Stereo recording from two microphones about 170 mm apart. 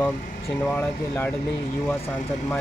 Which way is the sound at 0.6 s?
10° left (ahead or behind).